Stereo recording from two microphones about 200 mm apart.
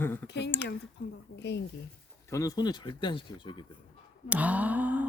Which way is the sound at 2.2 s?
15° left (ahead or behind).